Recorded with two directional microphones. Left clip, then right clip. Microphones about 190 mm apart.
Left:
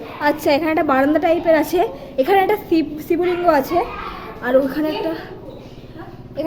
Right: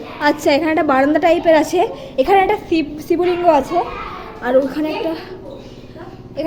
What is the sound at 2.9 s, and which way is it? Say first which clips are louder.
A woman's voice: right 2 dB; 5° right (ahead or behind).